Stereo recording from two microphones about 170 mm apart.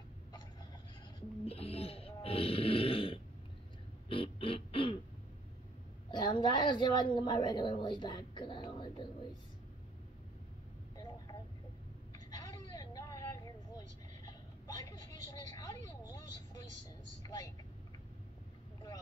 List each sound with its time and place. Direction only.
1.4 s snoring: 35° left (ahead or behind)
4.1 s a sound: 30° left (ahead or behind)
6.0 s a woman's voice: 30° left (ahead or behind)
8.6 s a sound: 30° left (ahead or behind)
12.4 s vehicle: 20° left (ahead or behind)
17.2 s speech: 20° left (ahead or behind)